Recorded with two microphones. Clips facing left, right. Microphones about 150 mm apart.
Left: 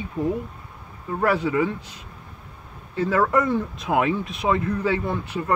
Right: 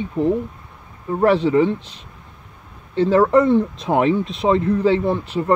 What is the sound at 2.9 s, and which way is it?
Speech, 30° right (ahead or behind).